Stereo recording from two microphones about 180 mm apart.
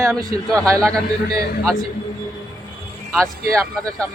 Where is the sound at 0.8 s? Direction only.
5° left (ahead or behind).